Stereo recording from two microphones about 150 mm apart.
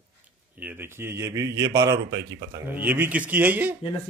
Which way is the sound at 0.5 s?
15° right (ahead or behind).